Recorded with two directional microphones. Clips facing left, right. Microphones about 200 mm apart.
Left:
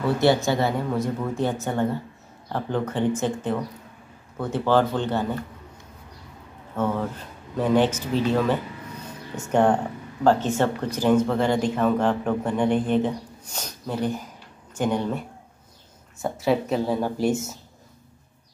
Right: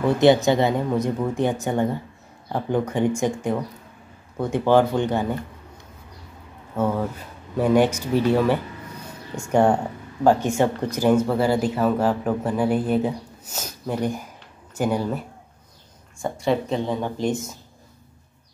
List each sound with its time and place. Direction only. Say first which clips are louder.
0.0 s speech: right 4 dB; 20° right (ahead or behind)
6.8 s speech: right 2 dB; 10° right (ahead or behind); by 17.6 s 5° left (ahead or behind)